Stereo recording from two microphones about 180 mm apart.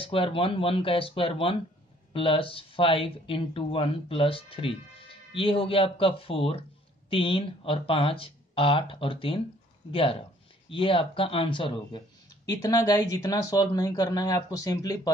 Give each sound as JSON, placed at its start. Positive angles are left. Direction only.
{"t": 0.0, "sound": "speech", "side_deg": 30}